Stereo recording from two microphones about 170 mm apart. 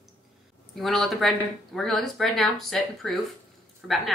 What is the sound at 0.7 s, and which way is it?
Speech, centre (ahead or behind).